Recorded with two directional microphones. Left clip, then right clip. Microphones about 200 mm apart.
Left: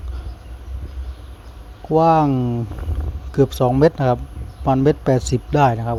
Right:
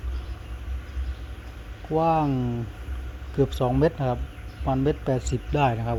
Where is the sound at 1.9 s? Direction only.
25° left (ahead or behind).